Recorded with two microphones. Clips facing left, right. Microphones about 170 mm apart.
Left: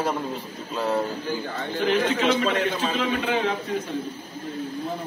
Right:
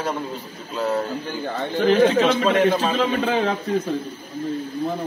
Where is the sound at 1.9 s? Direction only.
40° right (ahead or behind).